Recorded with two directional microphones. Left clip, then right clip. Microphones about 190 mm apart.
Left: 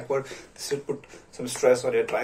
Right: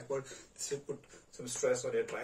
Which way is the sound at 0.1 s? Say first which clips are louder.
Left 11 dB; 35° right (ahead or behind).